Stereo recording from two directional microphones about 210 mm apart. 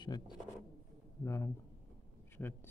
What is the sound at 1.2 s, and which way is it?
A man's voice, 15° left (ahead or behind).